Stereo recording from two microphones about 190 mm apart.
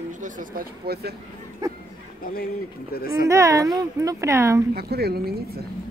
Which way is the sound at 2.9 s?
55° left (ahead or behind).